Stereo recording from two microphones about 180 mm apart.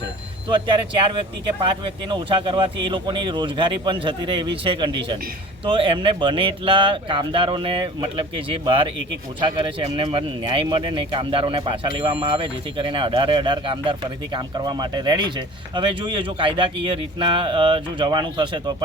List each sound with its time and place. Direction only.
0.4 s speech: 30° right (ahead or behind)